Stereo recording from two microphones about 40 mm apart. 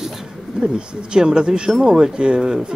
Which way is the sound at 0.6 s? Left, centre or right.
Right.